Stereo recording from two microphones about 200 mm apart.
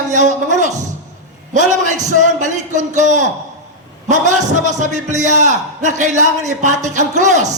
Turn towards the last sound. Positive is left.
turn(degrees=-35)  # may be behind; listen again after turning